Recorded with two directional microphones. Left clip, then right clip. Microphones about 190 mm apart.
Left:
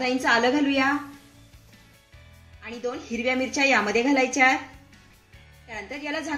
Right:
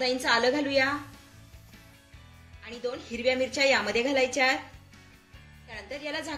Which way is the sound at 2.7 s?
40° left (ahead or behind).